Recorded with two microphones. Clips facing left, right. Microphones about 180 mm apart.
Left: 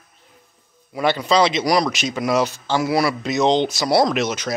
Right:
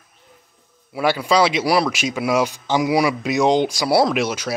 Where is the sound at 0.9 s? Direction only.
10° right (ahead or behind).